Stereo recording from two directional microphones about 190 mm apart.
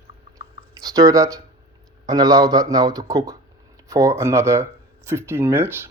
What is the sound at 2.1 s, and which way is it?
Speech, 20° right (ahead or behind).